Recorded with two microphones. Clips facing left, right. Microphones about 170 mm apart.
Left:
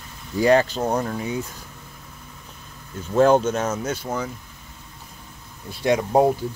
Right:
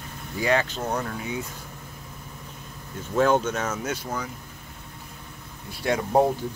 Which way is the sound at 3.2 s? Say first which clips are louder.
Left 5 dB; 35° left (ahead or behind).